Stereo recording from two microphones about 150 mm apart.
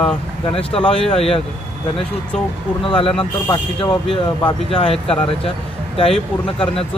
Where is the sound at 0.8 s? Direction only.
5° left (ahead or behind).